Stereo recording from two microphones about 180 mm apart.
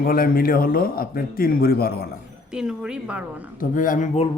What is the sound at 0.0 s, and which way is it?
Speech, 55° left (ahead or behind).